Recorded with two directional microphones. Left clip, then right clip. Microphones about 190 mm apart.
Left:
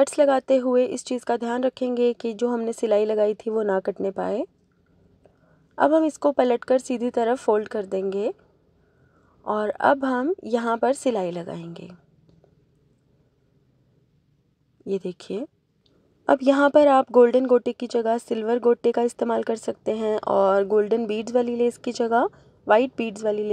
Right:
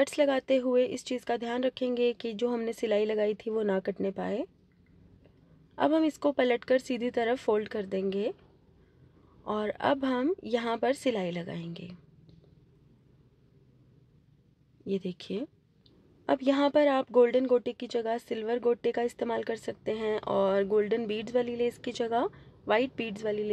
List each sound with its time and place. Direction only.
0.0 s speech: 20° left (ahead or behind)
5.8 s a woman's voice: 15° left (ahead or behind)
9.4 s a woman's voice: 15° left (ahead or behind)
14.9 s speech: 20° left (ahead or behind)